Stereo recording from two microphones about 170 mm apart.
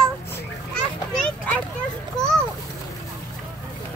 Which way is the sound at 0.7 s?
5° left (ahead or behind).